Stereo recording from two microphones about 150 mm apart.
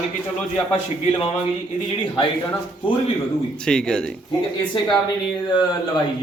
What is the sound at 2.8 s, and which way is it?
Speech, 35° left (ahead or behind).